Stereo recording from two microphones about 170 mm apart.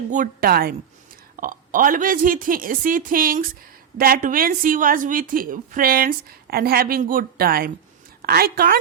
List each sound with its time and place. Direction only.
0.1 s a woman's voice: 55° right (ahead or behind)
1.4 s a woman's voice: 55° right (ahead or behind)